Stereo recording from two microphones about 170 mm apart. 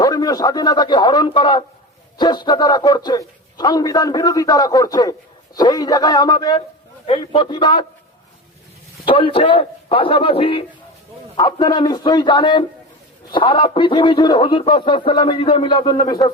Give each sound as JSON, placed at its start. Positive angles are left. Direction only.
{"t": 0.0, "sound": "a man's voice", "side_deg": 20}
{"t": 9.0, "sound": "a man's voice", "side_deg": 30}